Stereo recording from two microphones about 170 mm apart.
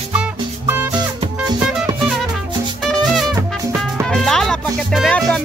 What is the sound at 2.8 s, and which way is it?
Music, centre (ahead or behind).